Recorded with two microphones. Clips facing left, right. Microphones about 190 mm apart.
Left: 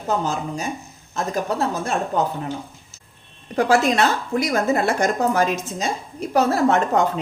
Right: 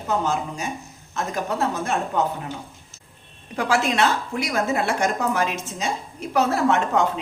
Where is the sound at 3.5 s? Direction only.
40° left (ahead or behind).